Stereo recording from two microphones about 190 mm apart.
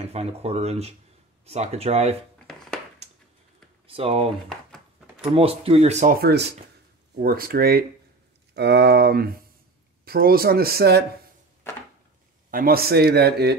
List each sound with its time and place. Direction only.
0.0 s speech: 35° right (ahead or behind)
2.3 s a sound: 5° left (ahead or behind)
3.8 s speech: 30° right (ahead or behind); by 11.1 s 55° right (ahead or behind)
12.4 s speech: 50° right (ahead or behind)